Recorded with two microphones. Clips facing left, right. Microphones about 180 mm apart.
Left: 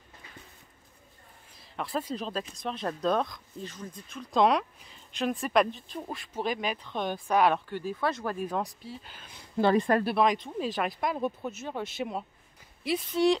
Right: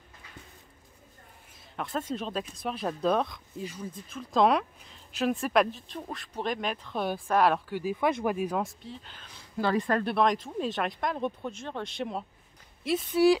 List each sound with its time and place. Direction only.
1.8 s speech: centre (ahead or behind)
8.8 s speech: 5° left (ahead or behind)
9.6 s speech: 20° left (ahead or behind)
9.9 s speech: 5° left (ahead or behind)